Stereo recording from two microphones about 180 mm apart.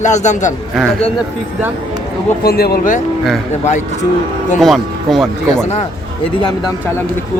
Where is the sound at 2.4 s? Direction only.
60° left (ahead or behind).